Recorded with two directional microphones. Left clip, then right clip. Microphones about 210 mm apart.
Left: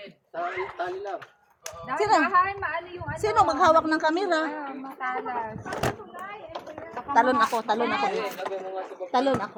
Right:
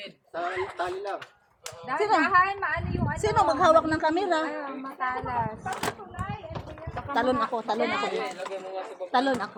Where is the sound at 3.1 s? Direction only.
15° left (ahead or behind).